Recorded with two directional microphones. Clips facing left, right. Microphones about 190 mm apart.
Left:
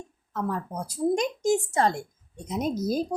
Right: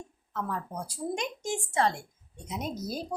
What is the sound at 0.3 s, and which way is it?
Speech, 40° left (ahead or behind).